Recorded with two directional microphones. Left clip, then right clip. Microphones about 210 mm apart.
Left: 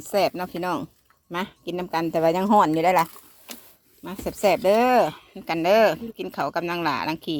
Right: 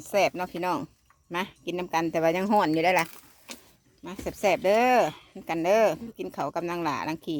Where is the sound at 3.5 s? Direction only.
25° left (ahead or behind).